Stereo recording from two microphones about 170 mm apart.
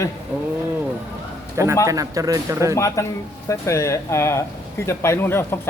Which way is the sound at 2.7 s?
15° left (ahead or behind).